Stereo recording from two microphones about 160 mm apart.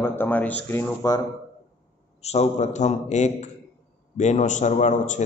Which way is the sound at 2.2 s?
40° left (ahead or behind).